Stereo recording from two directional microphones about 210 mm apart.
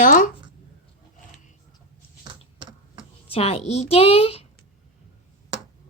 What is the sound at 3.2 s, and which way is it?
A child's voice, 30° left (ahead or behind).